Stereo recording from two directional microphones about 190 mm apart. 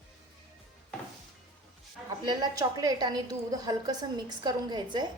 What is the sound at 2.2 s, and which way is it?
A woman's voice, 20° right (ahead or behind).